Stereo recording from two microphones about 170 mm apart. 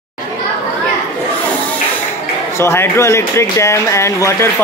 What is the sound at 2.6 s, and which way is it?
Speech, 15° left (ahead or behind).